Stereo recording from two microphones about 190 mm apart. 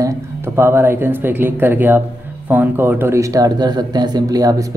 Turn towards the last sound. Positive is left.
turn(degrees=-20)  # may be behind; listen again after turning